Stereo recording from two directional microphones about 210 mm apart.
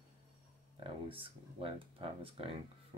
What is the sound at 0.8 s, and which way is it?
Speech, 25° right (ahead or behind).